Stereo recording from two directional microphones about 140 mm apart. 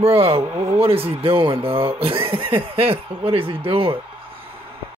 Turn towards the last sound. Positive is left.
turn(degrees=-40)  # may be behind; listen again after turning